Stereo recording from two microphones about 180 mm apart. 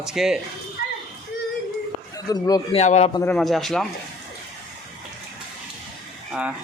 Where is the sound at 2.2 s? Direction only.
20° left (ahead or behind).